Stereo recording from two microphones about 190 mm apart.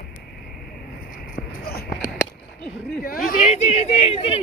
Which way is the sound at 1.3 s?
55° left (ahead or behind).